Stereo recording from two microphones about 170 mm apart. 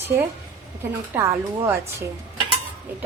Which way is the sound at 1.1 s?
15° right (ahead or behind).